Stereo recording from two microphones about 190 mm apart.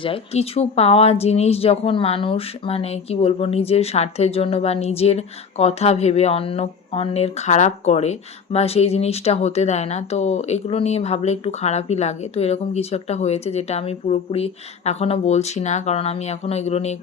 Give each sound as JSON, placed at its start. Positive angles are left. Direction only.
{"t": 0.0, "sound": "speech", "side_deg": 30}